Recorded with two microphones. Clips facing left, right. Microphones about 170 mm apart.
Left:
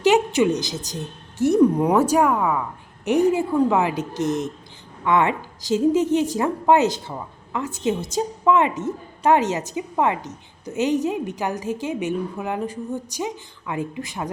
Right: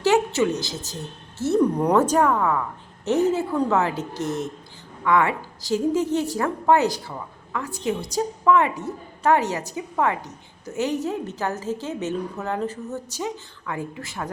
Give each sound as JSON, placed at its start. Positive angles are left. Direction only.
{"t": 0.0, "sound": "a woman's voice", "side_deg": 15}